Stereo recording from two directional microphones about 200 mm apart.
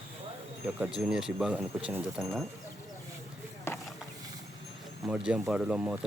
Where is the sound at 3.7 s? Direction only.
15° left (ahead or behind).